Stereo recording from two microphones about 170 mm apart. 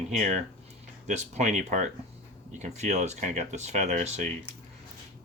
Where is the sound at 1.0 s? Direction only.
40° right (ahead or behind).